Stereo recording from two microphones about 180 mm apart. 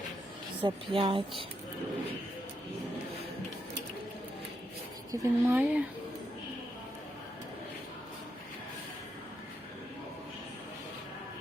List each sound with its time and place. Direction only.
0.6 s speech: 30° right (ahead or behind)
5.1 s a woman's voice: 15° right (ahead or behind)